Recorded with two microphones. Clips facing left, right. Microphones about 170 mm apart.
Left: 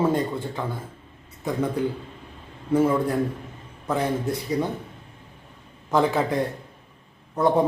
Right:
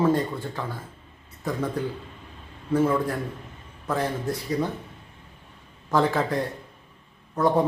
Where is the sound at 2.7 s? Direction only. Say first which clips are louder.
Left 2 dB; 15° left (ahead or behind).